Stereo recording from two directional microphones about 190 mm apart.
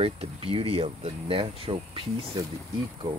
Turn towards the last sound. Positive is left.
turn(degrees=-20)  # may be behind; listen again after turning